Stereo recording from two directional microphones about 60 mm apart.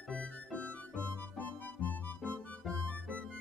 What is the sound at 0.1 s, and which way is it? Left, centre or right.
Music, centre.